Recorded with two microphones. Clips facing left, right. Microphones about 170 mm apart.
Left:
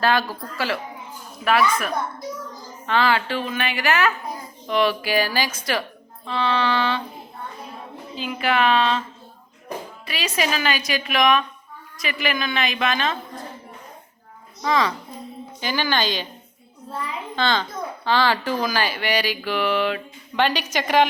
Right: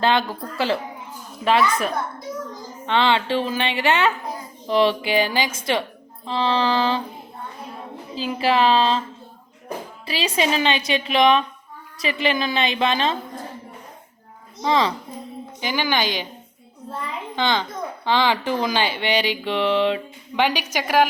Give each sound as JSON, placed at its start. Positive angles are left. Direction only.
{"t": 0.0, "sound": "a child's voice", "side_deg": -20}
{"t": 8.1, "sound": "a woman's voice", "side_deg": -35}
{"t": 10.1, "sound": "a child's voice", "side_deg": -30}
{"t": 14.6, "sound": "a child's voice", "side_deg": -25}
{"t": 15.6, "sound": "a woman's voice", "side_deg": -15}
{"t": 17.3, "sound": "a child's voice", "side_deg": -15}
{"t": 20.4, "sound": "a woman's voice", "side_deg": -10}